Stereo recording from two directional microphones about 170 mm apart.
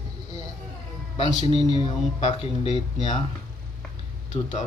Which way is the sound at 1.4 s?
35° left (ahead or behind).